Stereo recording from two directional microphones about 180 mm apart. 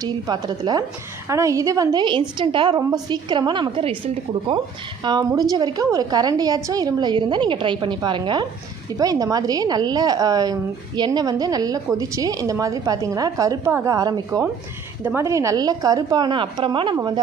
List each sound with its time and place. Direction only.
0.0 s a woman's voice: 20° right (ahead or behind)